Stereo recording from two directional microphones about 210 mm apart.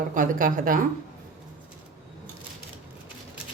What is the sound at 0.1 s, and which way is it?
Speech, 40° right (ahead or behind).